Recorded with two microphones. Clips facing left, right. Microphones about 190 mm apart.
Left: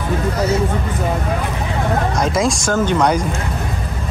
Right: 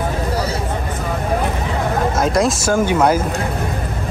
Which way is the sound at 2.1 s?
Centre (ahead or behind).